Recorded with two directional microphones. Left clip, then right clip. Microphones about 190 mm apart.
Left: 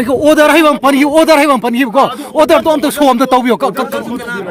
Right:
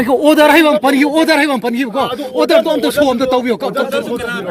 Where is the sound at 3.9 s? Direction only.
10° left (ahead or behind).